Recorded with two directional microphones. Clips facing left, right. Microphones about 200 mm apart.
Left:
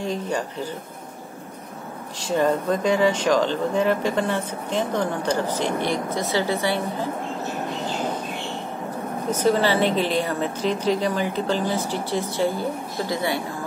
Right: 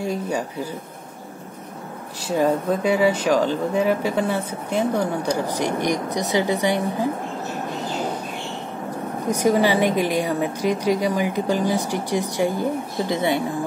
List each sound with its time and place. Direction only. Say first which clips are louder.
0.0 s speech: right 1 dB; 10° right (ahead or behind)
2.2 s speech: right 1 dB; 10° right (ahead or behind)
9.3 s speech: right 2 dB; 15° right (ahead or behind)